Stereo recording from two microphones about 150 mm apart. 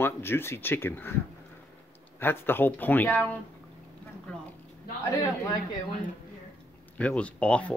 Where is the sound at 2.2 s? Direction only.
15° left (ahead or behind).